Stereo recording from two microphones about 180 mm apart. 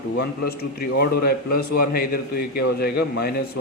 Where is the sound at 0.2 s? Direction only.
60° left (ahead or behind).